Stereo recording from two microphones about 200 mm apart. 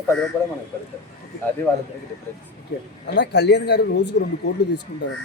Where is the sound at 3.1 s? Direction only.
60° left (ahead or behind).